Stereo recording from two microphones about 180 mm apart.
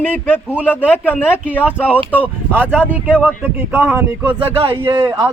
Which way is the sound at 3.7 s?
10° right (ahead or behind).